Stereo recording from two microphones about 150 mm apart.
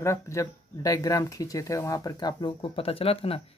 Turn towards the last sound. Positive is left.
turn(degrees=40)  # may be behind; listen again after turning